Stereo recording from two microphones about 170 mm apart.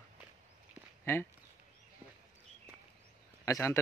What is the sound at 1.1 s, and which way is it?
Speech, 15° left (ahead or behind).